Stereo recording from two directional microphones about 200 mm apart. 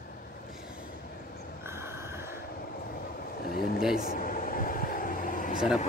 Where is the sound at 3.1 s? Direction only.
45° left (ahead or behind).